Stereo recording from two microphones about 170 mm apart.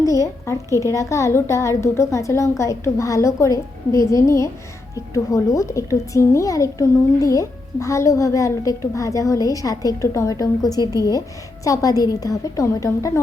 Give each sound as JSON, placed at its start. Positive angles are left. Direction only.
{"t": 0.0, "sound": "a woman's voice", "side_deg": 20}